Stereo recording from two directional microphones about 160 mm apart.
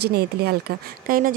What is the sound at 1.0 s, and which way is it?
Speech, 60° right (ahead or behind).